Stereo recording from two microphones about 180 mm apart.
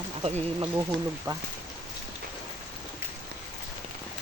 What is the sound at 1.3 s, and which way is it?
Speech, 20° right (ahead or behind).